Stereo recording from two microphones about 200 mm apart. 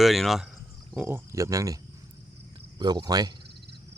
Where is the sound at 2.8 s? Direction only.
20° right (ahead or behind).